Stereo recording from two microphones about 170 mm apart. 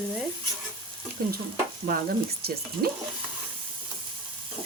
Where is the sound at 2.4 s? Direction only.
65° right (ahead or behind).